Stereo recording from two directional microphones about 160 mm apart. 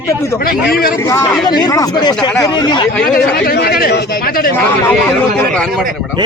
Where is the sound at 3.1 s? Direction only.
70° left (ahead or behind).